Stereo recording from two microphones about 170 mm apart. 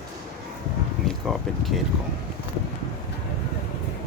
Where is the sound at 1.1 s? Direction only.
Centre (ahead or behind).